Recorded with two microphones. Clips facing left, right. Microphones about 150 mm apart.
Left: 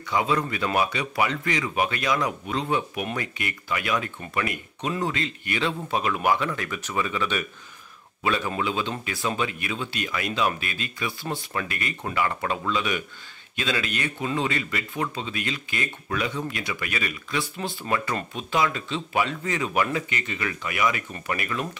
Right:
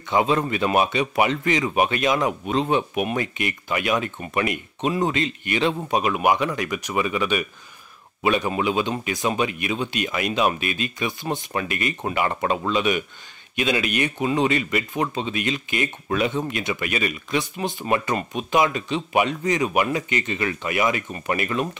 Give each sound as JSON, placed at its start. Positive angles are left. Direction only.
{"t": 0.1, "sound": "speech", "side_deg": -25}